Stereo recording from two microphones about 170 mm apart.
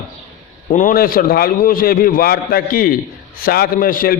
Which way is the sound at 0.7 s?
50° left (ahead or behind).